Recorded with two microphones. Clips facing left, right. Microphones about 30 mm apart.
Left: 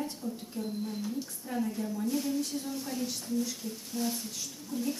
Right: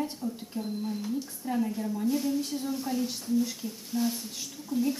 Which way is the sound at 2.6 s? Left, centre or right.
Centre.